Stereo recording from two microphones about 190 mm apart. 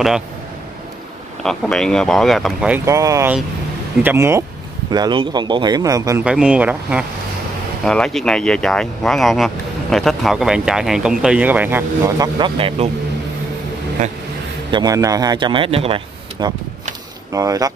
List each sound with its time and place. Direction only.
1.4 s speech: 5° left (ahead or behind)
2.8 s a man's voice: 15° right (ahead or behind)
6.2 s speech: 5° right (ahead or behind); by 12.9 s 30° right (ahead or behind)
14.7 s a man's voice: 20° right (ahead or behind)